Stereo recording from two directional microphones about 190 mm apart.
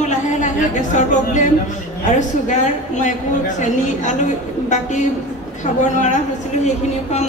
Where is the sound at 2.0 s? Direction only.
40° left (ahead or behind).